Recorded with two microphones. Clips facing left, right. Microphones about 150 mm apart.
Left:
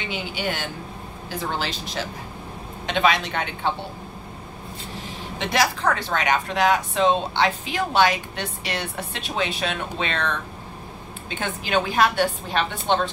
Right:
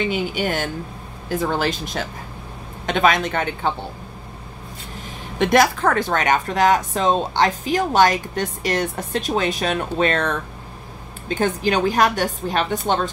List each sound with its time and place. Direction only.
0.1 s speech: 45° right (ahead or behind)
5.4 s a woman's voice: 50° right (ahead or behind)